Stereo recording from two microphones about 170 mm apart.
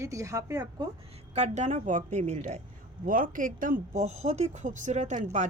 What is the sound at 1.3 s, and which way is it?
Speech, 40° right (ahead or behind).